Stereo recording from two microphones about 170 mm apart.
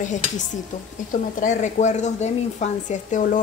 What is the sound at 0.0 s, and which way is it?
Speech, 45° left (ahead or behind).